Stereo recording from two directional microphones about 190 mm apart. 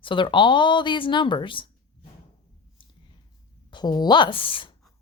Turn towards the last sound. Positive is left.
turn(degrees=25)  # may be behind; listen again after turning